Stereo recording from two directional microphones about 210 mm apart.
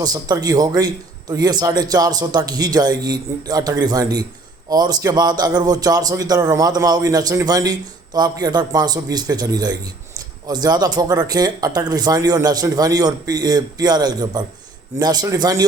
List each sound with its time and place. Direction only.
0.0 s a man's voice: 15° right (ahead or behind)